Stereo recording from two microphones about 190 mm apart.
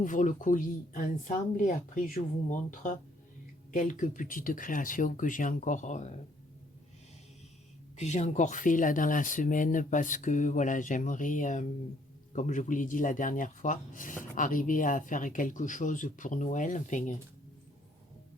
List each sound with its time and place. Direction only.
0.0 s speech: 40° left (ahead or behind)
7.9 s speech: 35° left (ahead or behind)